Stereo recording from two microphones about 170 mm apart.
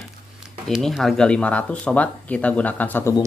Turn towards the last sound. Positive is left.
turn(degrees=10)  # may be behind; listen again after turning